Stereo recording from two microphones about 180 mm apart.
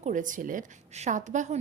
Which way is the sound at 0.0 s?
45° right (ahead or behind).